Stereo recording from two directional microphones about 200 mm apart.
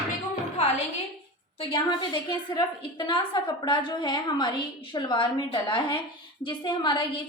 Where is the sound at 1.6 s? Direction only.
25° left (ahead or behind).